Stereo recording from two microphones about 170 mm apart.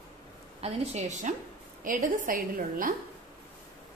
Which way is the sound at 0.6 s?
40° right (ahead or behind).